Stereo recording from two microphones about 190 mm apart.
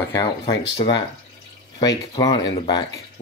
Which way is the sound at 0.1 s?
20° left (ahead or behind).